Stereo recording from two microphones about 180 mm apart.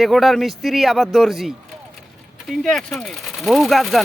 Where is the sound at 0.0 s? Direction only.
Centre (ahead or behind).